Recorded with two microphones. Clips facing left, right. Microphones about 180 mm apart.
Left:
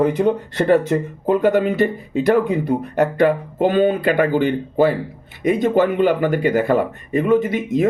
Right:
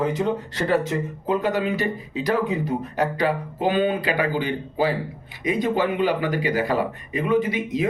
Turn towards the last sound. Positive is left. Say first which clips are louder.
# left 5 dB
turn(degrees=45)  # may be behind; listen again after turning